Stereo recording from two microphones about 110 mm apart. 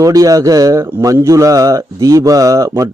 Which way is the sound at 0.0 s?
30° right (ahead or behind).